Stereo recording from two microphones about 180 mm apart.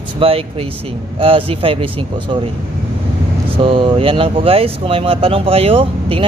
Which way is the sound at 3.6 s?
30° right (ahead or behind).